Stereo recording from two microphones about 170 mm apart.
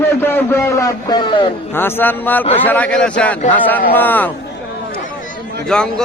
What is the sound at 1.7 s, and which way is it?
A man's voice, 10° left (ahead or behind).